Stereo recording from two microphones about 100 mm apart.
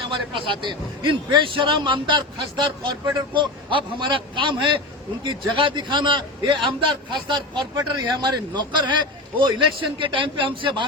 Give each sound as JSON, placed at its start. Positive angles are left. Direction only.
{"t": 0.0, "sound": "a man's voice", "side_deg": -55}